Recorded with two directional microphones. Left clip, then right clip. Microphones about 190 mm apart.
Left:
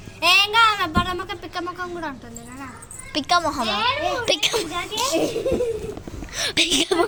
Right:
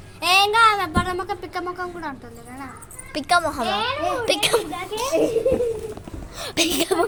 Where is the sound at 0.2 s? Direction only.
30° right (ahead or behind).